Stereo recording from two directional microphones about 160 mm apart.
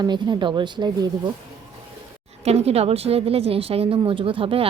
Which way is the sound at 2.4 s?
40° right (ahead or behind).